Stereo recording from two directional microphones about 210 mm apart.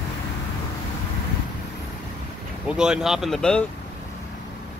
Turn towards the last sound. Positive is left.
turn(degrees=0)  # may be behind; listen again after turning